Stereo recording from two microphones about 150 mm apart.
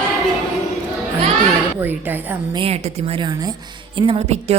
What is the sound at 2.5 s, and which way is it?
Speech, 40° right (ahead or behind).